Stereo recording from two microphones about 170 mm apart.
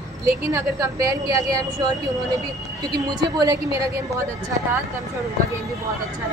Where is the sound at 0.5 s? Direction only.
20° right (ahead or behind).